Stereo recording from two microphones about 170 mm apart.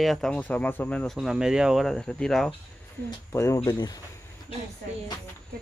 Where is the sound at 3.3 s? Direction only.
15° left (ahead or behind).